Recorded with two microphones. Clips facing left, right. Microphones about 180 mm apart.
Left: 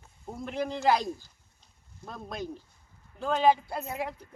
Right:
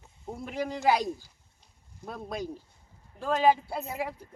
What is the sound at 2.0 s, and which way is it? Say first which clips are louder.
Speech: right 2 dB; 10° right (ahead or behind).